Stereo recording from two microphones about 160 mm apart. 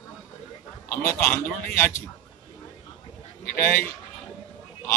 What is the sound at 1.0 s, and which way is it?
Speech, 15° left (ahead or behind).